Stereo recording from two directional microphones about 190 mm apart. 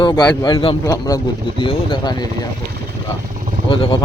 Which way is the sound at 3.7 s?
30° left (ahead or behind).